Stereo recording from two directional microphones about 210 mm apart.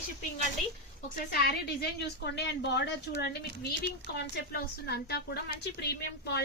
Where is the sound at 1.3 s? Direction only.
45° left (ahead or behind).